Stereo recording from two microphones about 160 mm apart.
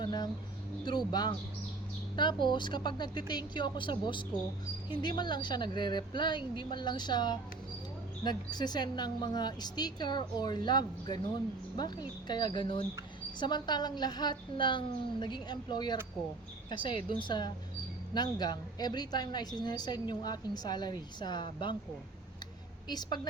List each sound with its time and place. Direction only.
0.0 s bird: 25° left (ahead or behind)
0.9 s a woman's voice: 25° left (ahead or behind)
22.9 s a woman's voice: 25° left (ahead or behind)